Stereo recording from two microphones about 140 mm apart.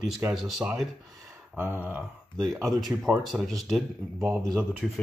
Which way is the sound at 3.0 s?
Centre (ahead or behind).